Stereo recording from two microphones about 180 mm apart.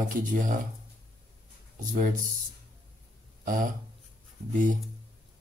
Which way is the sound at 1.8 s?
45° right (ahead or behind).